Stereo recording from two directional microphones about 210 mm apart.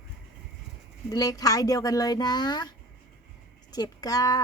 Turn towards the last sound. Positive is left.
turn(degrees=15)  # may be behind; listen again after turning